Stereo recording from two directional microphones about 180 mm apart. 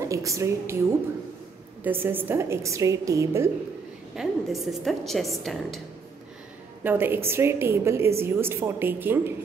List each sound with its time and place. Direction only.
0.1 s a woman's voice: 15° right (ahead or behind)
4.2 s a woman's voice: centre (ahead or behind)
6.8 s a woman's voice: 10° right (ahead or behind)